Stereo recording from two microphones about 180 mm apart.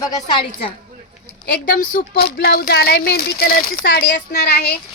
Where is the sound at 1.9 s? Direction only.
60° left (ahead or behind).